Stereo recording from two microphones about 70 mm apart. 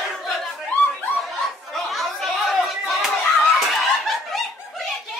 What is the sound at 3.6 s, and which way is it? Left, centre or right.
Snicker, centre.